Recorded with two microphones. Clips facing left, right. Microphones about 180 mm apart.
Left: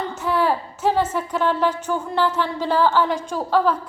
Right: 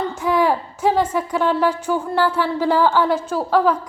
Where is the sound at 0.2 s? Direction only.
15° right (ahead or behind).